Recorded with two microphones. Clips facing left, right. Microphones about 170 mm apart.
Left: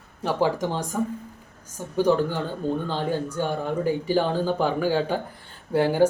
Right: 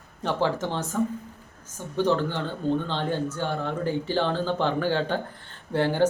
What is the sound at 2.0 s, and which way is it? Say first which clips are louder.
Speech: left 3 dB; 10° left (ahead or behind).